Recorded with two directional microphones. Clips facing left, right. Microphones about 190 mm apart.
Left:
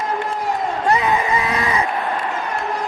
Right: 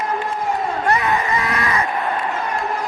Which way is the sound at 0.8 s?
20° left (ahead or behind).